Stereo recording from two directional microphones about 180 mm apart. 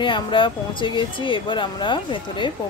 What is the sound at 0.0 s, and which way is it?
Speech, 25° left (ahead or behind).